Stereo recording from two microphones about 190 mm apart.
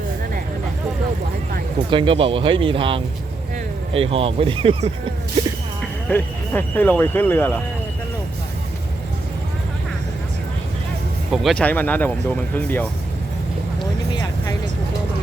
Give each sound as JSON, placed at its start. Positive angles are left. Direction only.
{"t": 1.9, "sound": "speech", "side_deg": -25}
{"t": 5.8, "sound": "speech", "side_deg": 10}
{"t": 11.3, "sound": "speech", "side_deg": 0}
{"t": 14.1, "sound": "music", "side_deg": 25}